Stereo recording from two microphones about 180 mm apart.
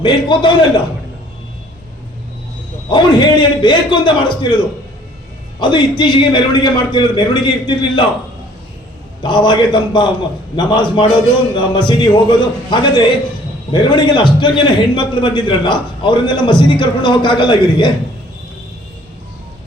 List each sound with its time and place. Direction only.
0.0 s a man's voice: 25° left (ahead or behind)
2.9 s a man's voice: 25° left (ahead or behind)
9.2 s a man's voice: 25° left (ahead or behind)